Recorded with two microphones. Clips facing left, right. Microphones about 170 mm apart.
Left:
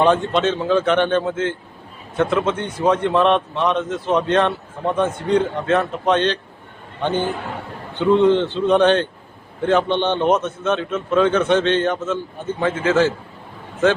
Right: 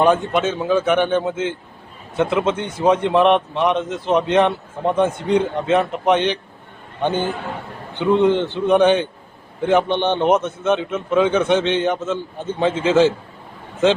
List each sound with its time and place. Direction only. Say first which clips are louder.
0.0 s a man's voice: even; 10° right (ahead or behind)